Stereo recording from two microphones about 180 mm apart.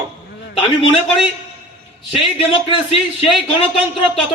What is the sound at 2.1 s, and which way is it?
Speech, 30° left (ahead or behind).